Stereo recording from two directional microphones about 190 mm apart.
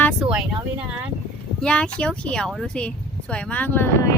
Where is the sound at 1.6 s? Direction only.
5° left (ahead or behind).